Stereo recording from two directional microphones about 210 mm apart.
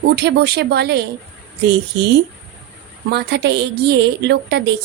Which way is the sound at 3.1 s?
50° right (ahead or behind).